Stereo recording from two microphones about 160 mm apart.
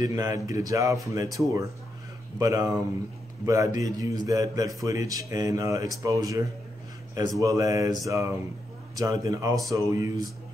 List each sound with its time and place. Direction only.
0.0 s speech: 20° right (ahead or behind)